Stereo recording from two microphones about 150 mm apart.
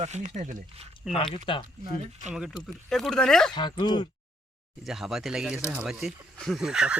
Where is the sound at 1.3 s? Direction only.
35° left (ahead or behind).